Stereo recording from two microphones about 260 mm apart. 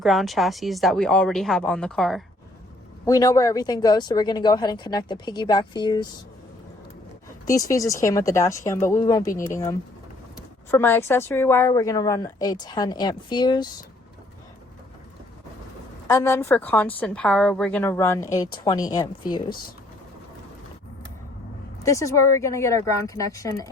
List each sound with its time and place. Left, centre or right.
0.0 s speech: centre
3.1 s a woman's voice: centre
7.4 s a woman's voice: centre
16.0 s a woman's voice: centre
21.8 s a woman's voice: centre